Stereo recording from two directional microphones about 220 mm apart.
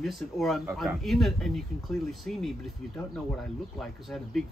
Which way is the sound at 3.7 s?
Centre (ahead or behind).